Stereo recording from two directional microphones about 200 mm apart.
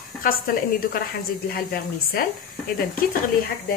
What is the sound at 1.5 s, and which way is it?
Speech, 50° left (ahead or behind).